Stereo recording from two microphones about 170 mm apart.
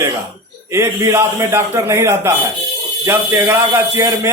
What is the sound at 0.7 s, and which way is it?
Speech, 15° right (ahead or behind).